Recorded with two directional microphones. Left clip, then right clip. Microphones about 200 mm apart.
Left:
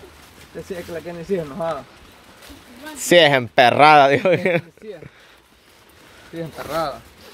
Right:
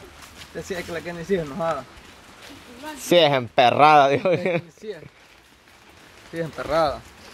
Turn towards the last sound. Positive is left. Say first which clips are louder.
# right 3 dB
turn(degrees=-10)  # may be behind; listen again after turning